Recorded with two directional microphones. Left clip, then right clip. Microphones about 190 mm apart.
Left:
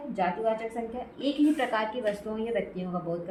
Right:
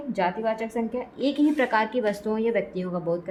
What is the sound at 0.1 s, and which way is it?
A woman's voice, 50° right (ahead or behind).